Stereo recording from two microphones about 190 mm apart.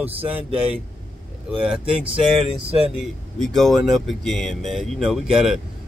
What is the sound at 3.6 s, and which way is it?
A man's voice, centre (ahead or behind).